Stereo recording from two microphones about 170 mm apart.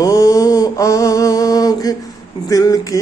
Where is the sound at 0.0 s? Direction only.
20° left (ahead or behind).